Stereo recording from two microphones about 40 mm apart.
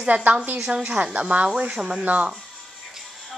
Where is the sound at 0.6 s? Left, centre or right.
Centre.